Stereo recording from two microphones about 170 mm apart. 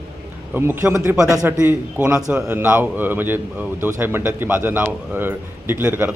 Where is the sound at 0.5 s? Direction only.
15° right (ahead or behind).